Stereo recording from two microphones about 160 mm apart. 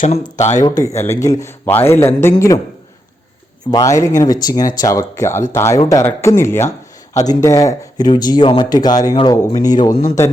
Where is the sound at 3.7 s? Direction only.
20° left (ahead or behind).